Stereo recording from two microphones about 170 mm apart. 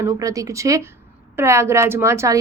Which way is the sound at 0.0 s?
20° right (ahead or behind).